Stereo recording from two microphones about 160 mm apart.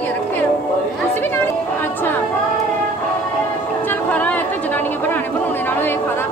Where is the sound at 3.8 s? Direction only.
10° left (ahead or behind).